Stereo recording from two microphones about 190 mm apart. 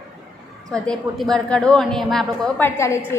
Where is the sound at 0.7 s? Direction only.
5° left (ahead or behind).